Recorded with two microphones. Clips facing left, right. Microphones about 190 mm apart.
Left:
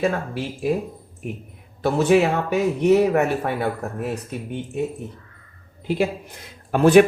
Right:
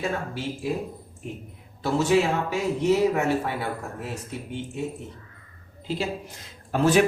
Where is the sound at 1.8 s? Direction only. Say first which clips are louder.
Left 4 dB; 60° left (ahead or behind).